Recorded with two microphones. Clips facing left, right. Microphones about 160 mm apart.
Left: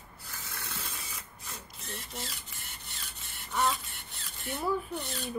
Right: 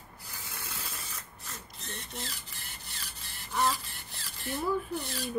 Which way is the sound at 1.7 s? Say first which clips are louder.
Even; centre (ahead or behind).